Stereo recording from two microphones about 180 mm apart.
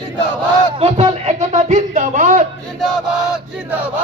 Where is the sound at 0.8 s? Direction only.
40° right (ahead or behind).